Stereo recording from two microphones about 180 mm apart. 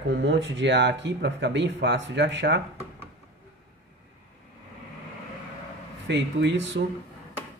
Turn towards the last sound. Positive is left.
turn(degrees=-85)